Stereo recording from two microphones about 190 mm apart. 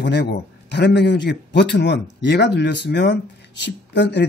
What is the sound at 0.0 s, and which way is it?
Speech, 60° left (ahead or behind).